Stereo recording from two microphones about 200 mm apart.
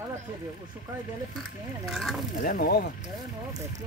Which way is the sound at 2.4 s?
50° left (ahead or behind).